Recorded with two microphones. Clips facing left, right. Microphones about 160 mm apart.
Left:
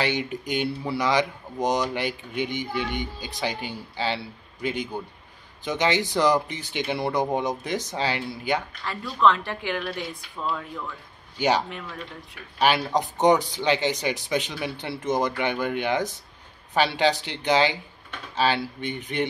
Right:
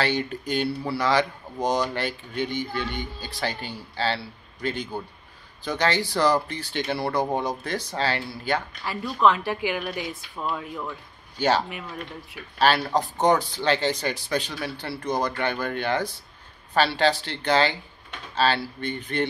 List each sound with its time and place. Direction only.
0.0 s speech: 15° left (ahead or behind)
8.8 s a woman's voice: 10° right (ahead or behind)
11.3 s speech: 15° left (ahead or behind)